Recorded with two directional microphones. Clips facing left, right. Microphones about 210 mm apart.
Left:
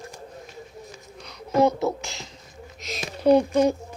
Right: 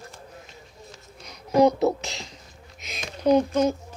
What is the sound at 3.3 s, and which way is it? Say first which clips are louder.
Speech: left 2 dB; 15° left (ahead or behind).